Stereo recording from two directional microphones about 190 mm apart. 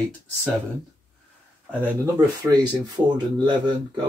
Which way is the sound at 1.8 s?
10° right (ahead or behind).